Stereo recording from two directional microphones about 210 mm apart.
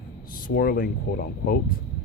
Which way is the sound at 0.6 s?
45° left (ahead or behind).